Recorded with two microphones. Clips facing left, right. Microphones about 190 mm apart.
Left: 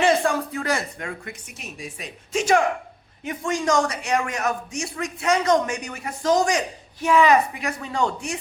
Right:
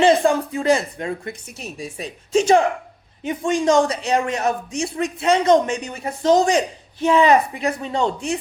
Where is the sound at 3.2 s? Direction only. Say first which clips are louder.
Right 5 dB; 25° right (ahead or behind).